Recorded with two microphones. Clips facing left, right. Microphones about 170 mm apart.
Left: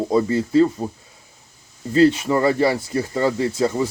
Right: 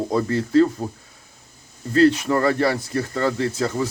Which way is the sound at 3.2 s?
25° left (ahead or behind).